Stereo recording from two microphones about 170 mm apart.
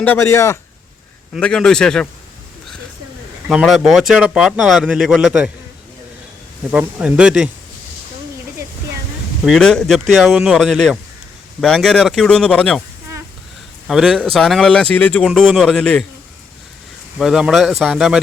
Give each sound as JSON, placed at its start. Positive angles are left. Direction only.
{"t": 0.0, "sound": "speech", "side_deg": 15}
{"t": 1.3, "sound": "speech", "side_deg": 5}
{"t": 3.5, "sound": "speech", "side_deg": -5}
{"t": 6.7, "sound": "speech", "side_deg": -5}
{"t": 9.4, "sound": "speech", "side_deg": 0}
{"t": 13.8, "sound": "speech", "side_deg": 0}
{"t": 17.2, "sound": "speech", "side_deg": 0}